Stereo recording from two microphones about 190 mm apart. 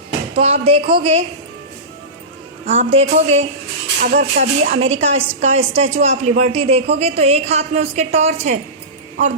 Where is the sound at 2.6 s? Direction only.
35° right (ahead or behind).